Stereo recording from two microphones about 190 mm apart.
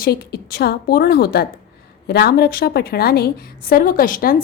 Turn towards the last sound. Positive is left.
turn(degrees=50)  # may be behind; listen again after turning